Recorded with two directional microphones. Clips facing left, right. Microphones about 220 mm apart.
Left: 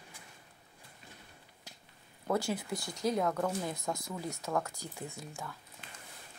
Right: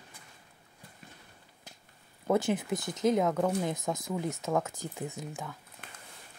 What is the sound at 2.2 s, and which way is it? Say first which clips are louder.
Speech: right 5 dB; 20° right (ahead or behind).